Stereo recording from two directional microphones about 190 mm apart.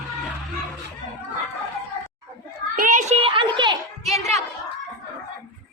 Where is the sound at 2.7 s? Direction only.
45° right (ahead or behind).